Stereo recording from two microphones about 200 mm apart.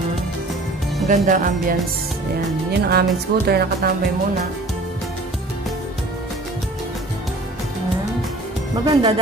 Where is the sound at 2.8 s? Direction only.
55° right (ahead or behind).